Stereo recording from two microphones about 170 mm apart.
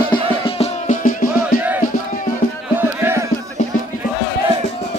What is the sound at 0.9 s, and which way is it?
Music, 55° left (ahead or behind).